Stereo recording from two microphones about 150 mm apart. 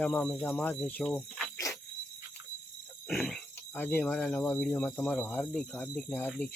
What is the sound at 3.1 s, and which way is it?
Speech, 5° left (ahead or behind).